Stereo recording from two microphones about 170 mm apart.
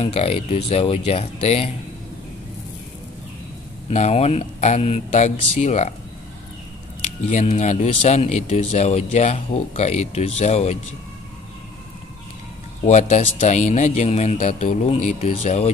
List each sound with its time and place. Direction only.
0.0 s speech: 35° left (ahead or behind)
3.9 s speech: 40° left (ahead or behind)
7.2 s speech: 45° left (ahead or behind)
12.8 s speech: 45° left (ahead or behind)